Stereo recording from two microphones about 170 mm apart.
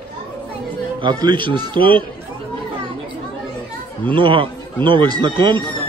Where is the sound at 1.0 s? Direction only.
25° right (ahead or behind).